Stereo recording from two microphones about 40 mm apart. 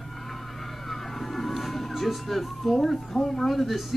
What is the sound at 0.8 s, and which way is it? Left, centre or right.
Speech, centre.